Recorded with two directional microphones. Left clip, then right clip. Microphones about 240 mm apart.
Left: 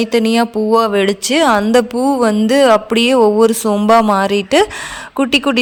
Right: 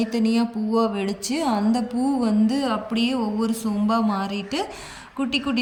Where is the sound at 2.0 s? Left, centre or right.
Left.